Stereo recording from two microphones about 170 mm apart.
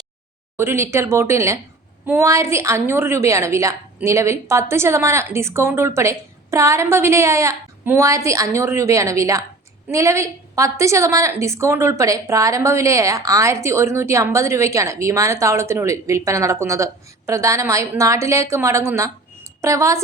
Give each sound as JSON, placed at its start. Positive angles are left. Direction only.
{"t": 0.5, "sound": "a woman's voice", "side_deg": -15}